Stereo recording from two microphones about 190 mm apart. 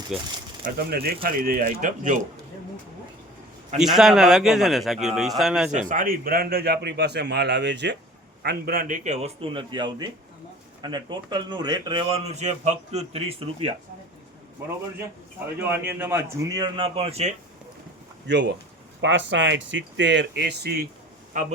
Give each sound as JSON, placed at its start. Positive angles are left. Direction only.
{"t": 0.1, "sound": "a man's voice", "side_deg": -5}
{"t": 0.6, "sound": "speech", "side_deg": -55}
{"t": 3.8, "sound": "a man's voice", "side_deg": 0}
{"t": 5.9, "sound": "a man's voice", "side_deg": -45}
{"t": 8.4, "sound": "a man's voice", "side_deg": -50}
{"t": 15.6, "sound": "a man's voice", "side_deg": -10}
{"t": 18.3, "sound": "speech", "side_deg": -65}
{"t": 21.3, "sound": "a man's voice", "side_deg": -40}